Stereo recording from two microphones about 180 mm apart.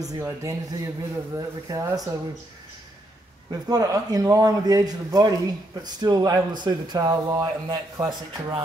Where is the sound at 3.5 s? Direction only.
20° right (ahead or behind).